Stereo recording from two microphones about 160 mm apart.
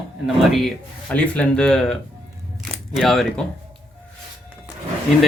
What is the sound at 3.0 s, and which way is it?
Speech, centre (ahead or behind).